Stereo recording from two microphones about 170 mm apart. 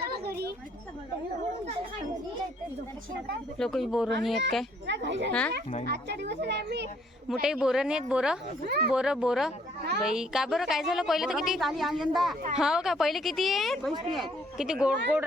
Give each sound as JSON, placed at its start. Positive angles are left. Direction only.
{"t": 0.0, "sound": "a sound", "side_deg": -65}
{"t": 3.6, "sound": "a woman's voice", "side_deg": 0}
{"t": 4.9, "sound": "speech", "side_deg": -90}
{"t": 5.8, "sound": "a child's voice", "side_deg": -75}
{"t": 7.4, "sound": "a woman's voice", "side_deg": -5}
{"t": 8.6, "sound": "speech", "side_deg": -65}
{"t": 8.9, "sound": "a woman's voice", "side_deg": -5}